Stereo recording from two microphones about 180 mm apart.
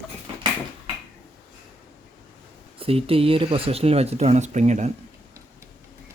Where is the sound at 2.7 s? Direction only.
30° right (ahead or behind).